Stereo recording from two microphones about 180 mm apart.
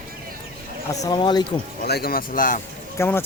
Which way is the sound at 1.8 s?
60° left (ahead or behind).